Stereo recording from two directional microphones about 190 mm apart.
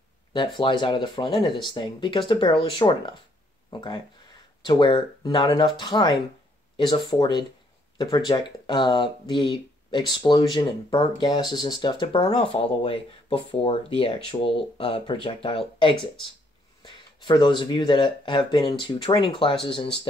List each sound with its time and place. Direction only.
0.6 s speech: 25° left (ahead or behind)